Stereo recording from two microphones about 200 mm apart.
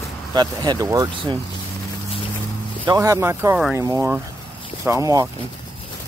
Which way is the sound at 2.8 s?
15° right (ahead or behind).